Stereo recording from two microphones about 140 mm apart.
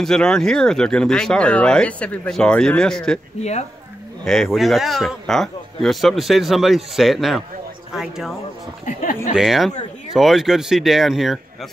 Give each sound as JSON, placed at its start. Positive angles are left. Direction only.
{"t": 0.0, "sound": "speech", "side_deg": 5}
{"t": 3.3, "sound": "speech", "side_deg": 55}
{"t": 4.2, "sound": "speech", "side_deg": 5}
{"t": 8.8, "sound": "speech", "side_deg": 75}
{"t": 9.3, "sound": "speech", "side_deg": -5}